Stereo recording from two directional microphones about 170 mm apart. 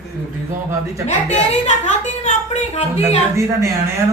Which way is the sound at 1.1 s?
45° left (ahead or behind).